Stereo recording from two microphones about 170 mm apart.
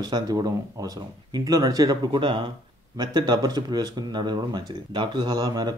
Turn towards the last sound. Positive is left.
turn(degrees=-25)  # may be behind; listen again after turning